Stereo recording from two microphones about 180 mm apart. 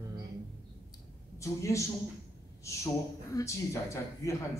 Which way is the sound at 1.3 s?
15° left (ahead or behind).